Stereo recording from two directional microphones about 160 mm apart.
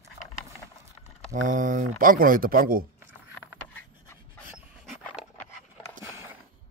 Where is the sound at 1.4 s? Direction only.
55° right (ahead or behind).